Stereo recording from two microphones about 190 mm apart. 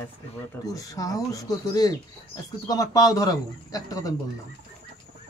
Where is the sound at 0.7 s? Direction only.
20° left (ahead or behind).